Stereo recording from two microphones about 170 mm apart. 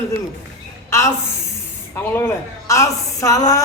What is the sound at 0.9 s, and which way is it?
A woman's voice, 15° left (ahead or behind).